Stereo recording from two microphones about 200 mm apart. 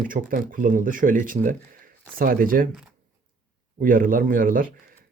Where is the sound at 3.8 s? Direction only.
45° right (ahead or behind).